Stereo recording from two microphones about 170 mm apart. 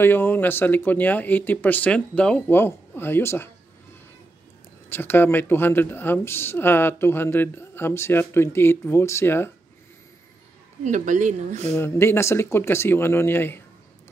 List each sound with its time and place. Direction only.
0.0 s speech: 10° left (ahead or behind)
4.8 s speech: 15° left (ahead or behind)
10.8 s speech: 45° right (ahead or behind)
11.7 s speech: 15° left (ahead or behind)